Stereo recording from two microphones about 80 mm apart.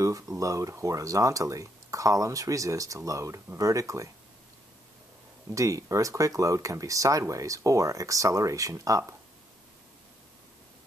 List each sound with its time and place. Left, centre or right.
0.0 s speech: right
5.5 s speech: right